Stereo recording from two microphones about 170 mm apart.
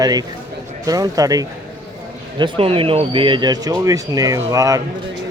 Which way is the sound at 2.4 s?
35° right (ahead or behind).